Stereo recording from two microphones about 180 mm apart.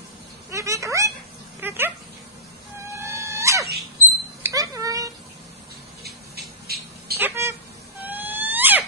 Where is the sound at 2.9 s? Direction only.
15° right (ahead or behind).